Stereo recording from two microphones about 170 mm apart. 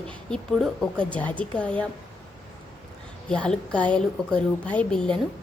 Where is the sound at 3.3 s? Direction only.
5° left (ahead or behind).